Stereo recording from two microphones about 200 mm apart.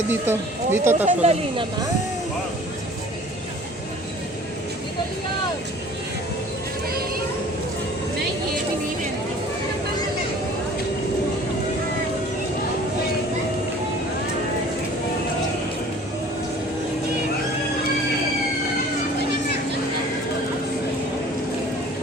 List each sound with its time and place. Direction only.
0.1 s speech: 10° right (ahead or behind)
1.0 s speech: 30° right (ahead or behind)